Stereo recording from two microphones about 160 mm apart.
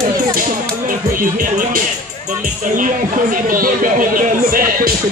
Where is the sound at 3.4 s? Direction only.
60° right (ahead or behind).